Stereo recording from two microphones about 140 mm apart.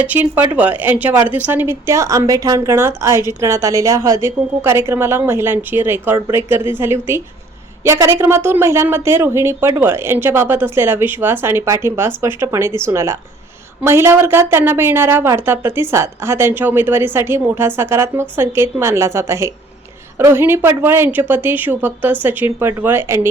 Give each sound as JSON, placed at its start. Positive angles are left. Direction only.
{"t": 0.0, "sound": "a woman's voice", "side_deg": -10}